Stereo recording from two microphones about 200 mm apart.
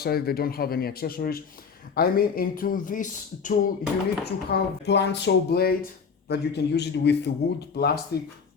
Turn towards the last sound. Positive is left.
turn(degrees=55)  # may be behind; listen again after turning